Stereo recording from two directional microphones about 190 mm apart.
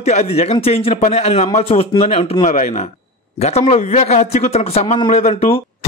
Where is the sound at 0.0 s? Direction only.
35° left (ahead or behind).